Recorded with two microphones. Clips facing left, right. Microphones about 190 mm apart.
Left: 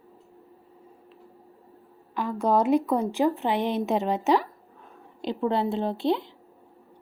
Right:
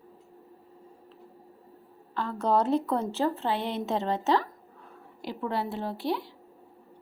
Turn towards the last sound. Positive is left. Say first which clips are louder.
# left 5 dB
turn(degrees=25)  # may be behind; listen again after turning